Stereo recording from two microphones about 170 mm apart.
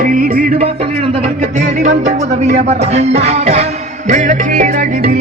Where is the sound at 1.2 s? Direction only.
45° right (ahead or behind).